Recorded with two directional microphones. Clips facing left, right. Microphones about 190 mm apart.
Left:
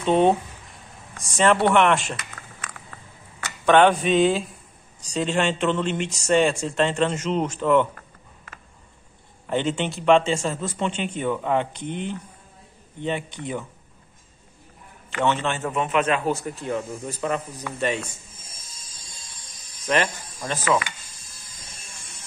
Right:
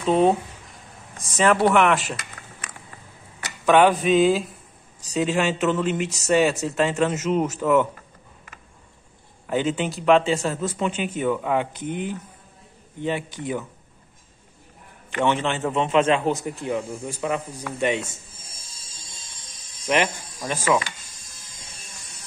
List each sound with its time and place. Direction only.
0.0 s speech: centre (ahead or behind)
3.6 s speech: 5° right (ahead or behind)
9.5 s speech: 5° right (ahead or behind)
15.1 s speech: 15° right (ahead or behind)
17.9 s a man's voice: 25° right (ahead or behind)
19.9 s speech: 15° right (ahead or behind)